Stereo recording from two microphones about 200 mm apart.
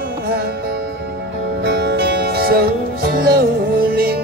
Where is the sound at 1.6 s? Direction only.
55° right (ahead or behind).